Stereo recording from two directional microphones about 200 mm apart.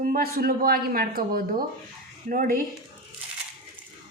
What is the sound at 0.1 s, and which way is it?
A woman's voice, 45° right (ahead or behind).